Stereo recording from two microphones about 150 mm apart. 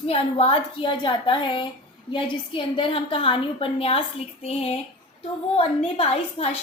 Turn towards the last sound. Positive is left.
turn(degrees=40)  # may be behind; listen again after turning